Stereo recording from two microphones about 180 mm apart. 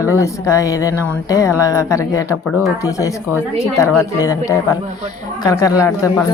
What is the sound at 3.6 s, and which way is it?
A woman's voice, 15° left (ahead or behind).